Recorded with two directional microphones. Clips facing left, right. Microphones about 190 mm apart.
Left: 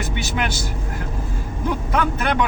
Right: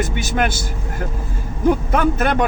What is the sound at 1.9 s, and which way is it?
Speech, 45° right (ahead or behind).